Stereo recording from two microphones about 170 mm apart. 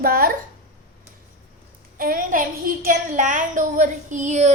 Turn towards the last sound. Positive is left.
turn(degrees=-45)  # may be behind; listen again after turning